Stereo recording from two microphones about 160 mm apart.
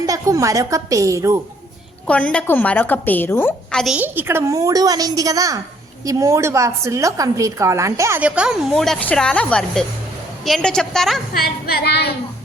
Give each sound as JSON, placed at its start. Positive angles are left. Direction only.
{"t": 0.0, "sound": "a woman's voice", "side_deg": -20}
{"t": 2.0, "sound": "a woman's voice", "side_deg": 10}
{"t": 3.9, "sound": "a woman's voice", "side_deg": -10}
{"t": 8.7, "sound": "speech", "side_deg": 5}
{"t": 11.3, "sound": "a sound", "side_deg": 70}